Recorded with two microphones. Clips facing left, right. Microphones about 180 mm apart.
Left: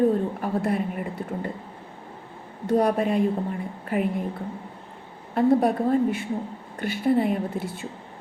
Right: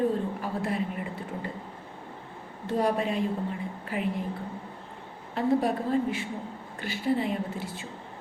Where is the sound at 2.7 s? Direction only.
55° left (ahead or behind).